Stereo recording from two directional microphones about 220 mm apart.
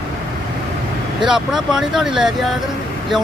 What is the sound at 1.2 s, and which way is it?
Speech, centre (ahead or behind).